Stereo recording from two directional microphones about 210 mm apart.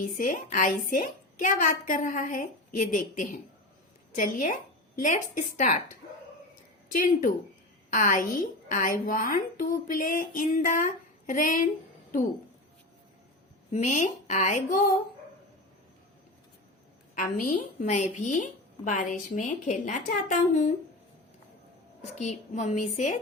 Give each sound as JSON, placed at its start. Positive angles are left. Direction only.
{"t": 0.2, "sound": "a woman's voice", "side_deg": 40}
{"t": 6.9, "sound": "a woman's voice", "side_deg": 45}
{"t": 13.7, "sound": "a woman's voice", "side_deg": 35}
{"t": 17.2, "sound": "a woman's voice", "side_deg": 40}
{"t": 22.1, "sound": "a woman's voice", "side_deg": 35}